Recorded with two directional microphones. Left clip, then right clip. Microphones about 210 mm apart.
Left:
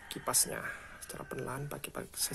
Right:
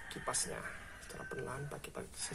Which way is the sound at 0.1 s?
40° left (ahead or behind).